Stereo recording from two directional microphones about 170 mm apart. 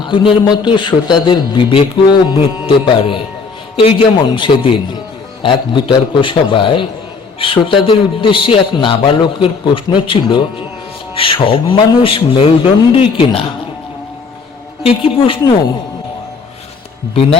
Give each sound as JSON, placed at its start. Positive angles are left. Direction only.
{"t": 0.1, "sound": "music", "side_deg": 30}
{"t": 3.8, "sound": "a man's voice", "side_deg": 30}
{"t": 5.4, "sound": "music", "side_deg": 30}
{"t": 7.3, "sound": "a man's voice", "side_deg": 30}
{"t": 14.8, "sound": "a man's voice", "side_deg": 35}